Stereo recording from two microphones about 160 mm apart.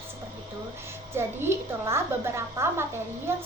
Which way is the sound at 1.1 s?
15° right (ahead or behind).